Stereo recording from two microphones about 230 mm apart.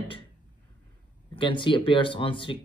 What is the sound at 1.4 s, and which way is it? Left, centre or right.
Speech, left.